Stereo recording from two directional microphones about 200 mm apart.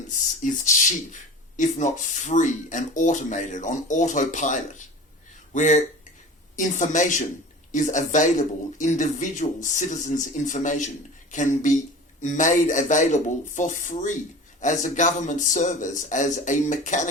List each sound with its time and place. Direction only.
0.4 s speech: 40° left (ahead or behind)